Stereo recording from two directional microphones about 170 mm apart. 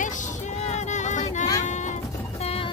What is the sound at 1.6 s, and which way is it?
Sheep, 45° left (ahead or behind).